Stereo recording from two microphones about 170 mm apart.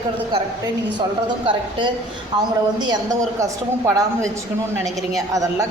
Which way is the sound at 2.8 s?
25° right (ahead or behind).